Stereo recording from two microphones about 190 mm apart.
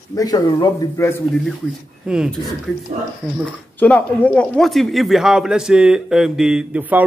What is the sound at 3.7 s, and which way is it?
Speech, 10° left (ahead or behind).